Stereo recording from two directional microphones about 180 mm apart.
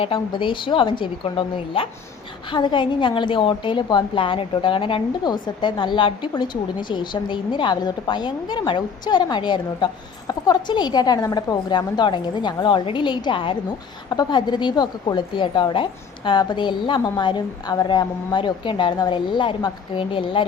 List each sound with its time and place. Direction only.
0.0 s a woman's voice: 30° left (ahead or behind)